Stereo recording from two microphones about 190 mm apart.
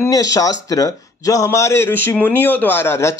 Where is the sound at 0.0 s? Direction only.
20° left (ahead or behind).